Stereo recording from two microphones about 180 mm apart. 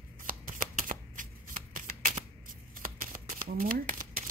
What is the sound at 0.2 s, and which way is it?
Shuffling cards, 50° right (ahead or behind).